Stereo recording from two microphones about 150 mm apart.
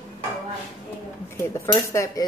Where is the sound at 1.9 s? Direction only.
20° left (ahead or behind).